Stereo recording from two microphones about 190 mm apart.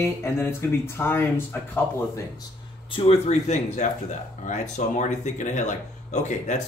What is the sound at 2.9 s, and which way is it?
Speech, 30° left (ahead or behind).